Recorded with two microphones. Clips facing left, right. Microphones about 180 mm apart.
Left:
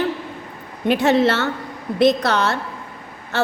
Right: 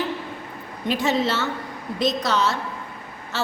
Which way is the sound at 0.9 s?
65° left (ahead or behind).